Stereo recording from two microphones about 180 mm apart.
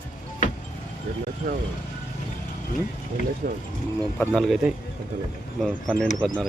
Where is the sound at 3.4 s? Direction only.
55° right (ahead or behind).